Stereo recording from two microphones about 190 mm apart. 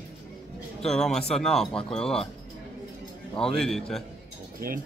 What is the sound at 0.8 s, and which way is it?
Speech, 5° left (ahead or behind).